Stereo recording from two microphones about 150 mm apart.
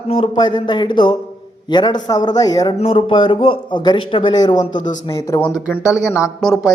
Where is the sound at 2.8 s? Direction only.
35° left (ahead or behind).